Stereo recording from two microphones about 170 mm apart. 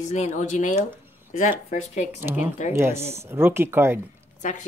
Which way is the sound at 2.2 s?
15° right (ahead or behind).